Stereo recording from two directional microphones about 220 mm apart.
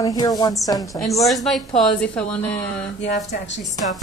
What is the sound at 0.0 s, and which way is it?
Speech, 15° left (ahead or behind).